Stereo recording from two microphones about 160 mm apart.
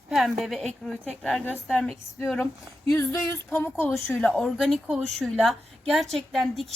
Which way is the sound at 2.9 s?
15° left (ahead or behind).